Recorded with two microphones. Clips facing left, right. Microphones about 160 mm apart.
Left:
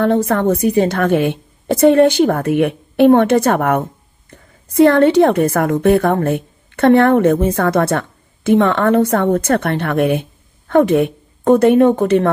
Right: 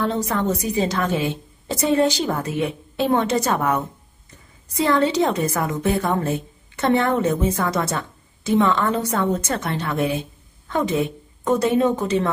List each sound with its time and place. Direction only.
0.0 s a woman's voice: 55° left (ahead or behind)